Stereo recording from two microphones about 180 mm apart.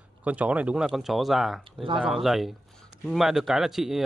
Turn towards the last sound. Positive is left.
turn(degrees=0)  # may be behind; listen again after turning